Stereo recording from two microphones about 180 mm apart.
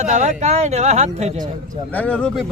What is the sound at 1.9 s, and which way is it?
Speech, 5° left (ahead or behind).